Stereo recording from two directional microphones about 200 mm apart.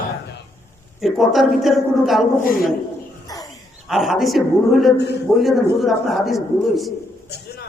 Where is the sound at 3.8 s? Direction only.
Centre (ahead or behind).